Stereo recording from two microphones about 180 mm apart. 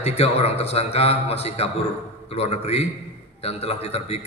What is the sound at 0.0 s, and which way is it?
A man's voice, 35° left (ahead or behind).